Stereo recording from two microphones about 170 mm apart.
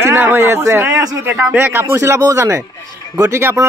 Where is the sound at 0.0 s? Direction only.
15° right (ahead or behind).